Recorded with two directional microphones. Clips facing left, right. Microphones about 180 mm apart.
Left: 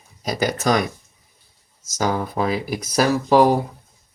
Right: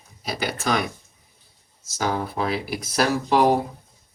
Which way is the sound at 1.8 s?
45° left (ahead or behind).